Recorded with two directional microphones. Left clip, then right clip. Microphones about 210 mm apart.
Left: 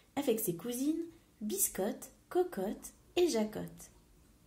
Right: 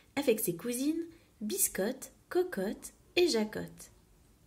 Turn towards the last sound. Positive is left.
turn(degrees=-20)  # may be behind; listen again after turning